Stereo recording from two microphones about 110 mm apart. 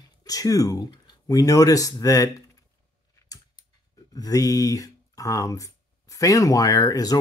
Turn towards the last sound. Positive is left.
turn(degrees=35)  # may be behind; listen again after turning